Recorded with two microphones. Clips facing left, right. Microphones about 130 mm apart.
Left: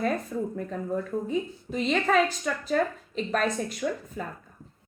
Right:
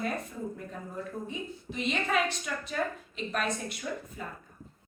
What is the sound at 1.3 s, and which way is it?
A woman's voice, 40° left (ahead or behind).